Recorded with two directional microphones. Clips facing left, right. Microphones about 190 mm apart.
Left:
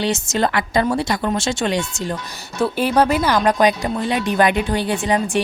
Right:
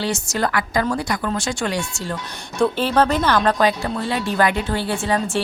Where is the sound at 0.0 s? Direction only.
20° left (ahead or behind).